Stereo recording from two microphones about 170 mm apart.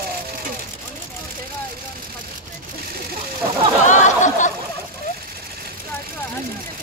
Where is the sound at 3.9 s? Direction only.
45° left (ahead or behind).